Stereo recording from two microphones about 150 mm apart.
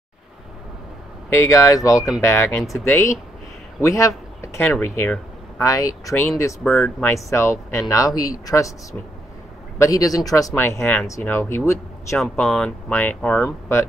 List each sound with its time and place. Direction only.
1.3 s speech: 20° left (ahead or behind)
6.6 s speech: 5° left (ahead or behind)
7.1 s speech: 20° left (ahead or behind)
9.8 s speech: 25° left (ahead or behind)
12.2 s speech: centre (ahead or behind)